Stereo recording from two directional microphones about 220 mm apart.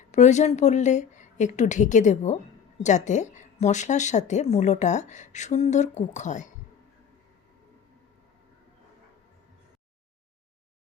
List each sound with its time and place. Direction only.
0.1 s a woman's voice: 30° left (ahead or behind)